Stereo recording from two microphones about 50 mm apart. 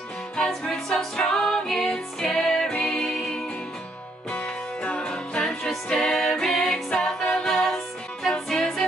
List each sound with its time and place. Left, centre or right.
0.5 s music: centre
4.8 s music: centre